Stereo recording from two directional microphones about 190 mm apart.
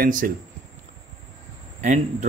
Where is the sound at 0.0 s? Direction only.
45° right (ahead or behind).